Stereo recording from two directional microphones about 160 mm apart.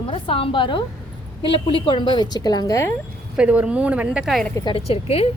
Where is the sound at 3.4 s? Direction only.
10° right (ahead or behind).